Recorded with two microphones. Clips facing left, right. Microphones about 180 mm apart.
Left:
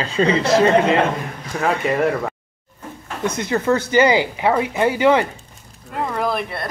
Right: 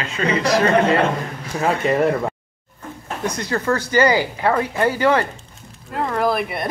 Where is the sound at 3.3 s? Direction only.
20° left (ahead or behind).